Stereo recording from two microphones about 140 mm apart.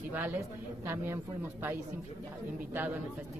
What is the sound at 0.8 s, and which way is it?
Speech, 15° right (ahead or behind).